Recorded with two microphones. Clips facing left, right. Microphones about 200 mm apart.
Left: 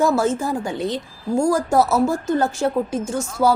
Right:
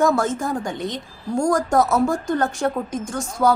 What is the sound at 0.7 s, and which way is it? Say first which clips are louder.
Speech: left 4 dB; 30° left (ahead or behind).